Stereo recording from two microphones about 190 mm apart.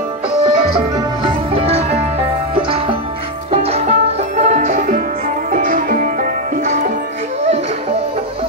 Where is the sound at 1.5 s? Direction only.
30° right (ahead or behind).